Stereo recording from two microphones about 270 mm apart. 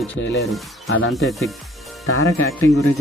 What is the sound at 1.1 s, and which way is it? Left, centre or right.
Speech, centre.